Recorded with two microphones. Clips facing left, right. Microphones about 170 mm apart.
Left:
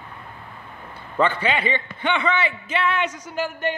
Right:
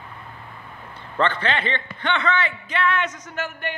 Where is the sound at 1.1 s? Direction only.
10° left (ahead or behind).